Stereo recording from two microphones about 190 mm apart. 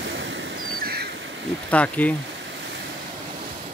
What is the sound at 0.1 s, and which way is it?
Vehicle, 80° right.